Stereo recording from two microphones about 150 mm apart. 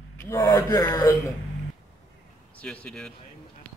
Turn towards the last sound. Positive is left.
turn(degrees=5)  # may be behind; listen again after turning